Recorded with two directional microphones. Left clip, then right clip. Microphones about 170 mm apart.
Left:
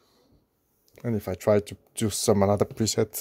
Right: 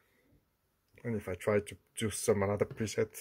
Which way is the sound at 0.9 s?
35° left (ahead or behind).